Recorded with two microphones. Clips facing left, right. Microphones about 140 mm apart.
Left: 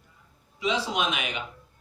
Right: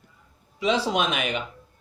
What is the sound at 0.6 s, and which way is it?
Speech, 55° right (ahead or behind).